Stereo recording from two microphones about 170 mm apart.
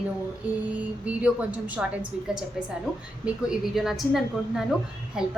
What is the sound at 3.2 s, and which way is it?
A woman's voice, 5° right (ahead or behind).